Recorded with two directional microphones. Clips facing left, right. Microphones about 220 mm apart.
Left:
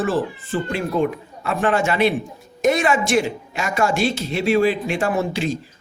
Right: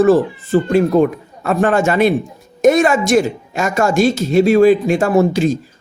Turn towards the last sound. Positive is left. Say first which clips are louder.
# right 9 dB
turn(degrees=-45)  # may be behind; listen again after turning